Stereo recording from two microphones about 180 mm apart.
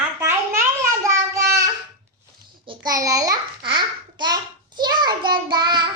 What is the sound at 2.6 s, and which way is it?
A child's voice, 20° right (ahead or behind).